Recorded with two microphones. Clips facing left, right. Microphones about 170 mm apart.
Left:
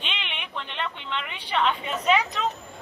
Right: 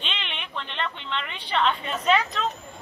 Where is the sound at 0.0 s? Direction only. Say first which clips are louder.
Even; 10° left (ahead or behind).